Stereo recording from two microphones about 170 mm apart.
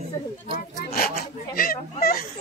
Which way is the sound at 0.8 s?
60° left (ahead or behind).